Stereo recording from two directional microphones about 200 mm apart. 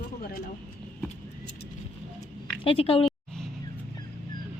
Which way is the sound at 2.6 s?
25° left (ahead or behind).